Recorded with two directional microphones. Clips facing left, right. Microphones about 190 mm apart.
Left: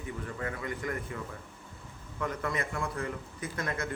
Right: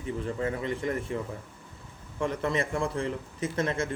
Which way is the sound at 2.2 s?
25° right (ahead or behind).